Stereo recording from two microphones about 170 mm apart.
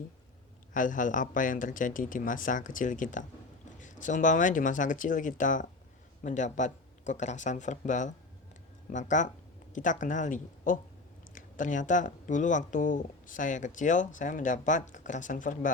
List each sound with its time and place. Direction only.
0.7 s speech: 50° left (ahead or behind)